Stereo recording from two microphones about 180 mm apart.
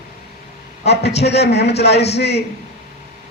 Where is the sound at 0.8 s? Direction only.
70° left (ahead or behind).